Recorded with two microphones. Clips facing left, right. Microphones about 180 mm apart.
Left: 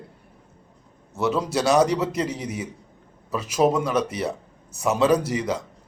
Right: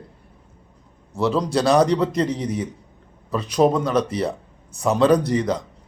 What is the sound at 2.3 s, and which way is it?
Speech, 30° right (ahead or behind).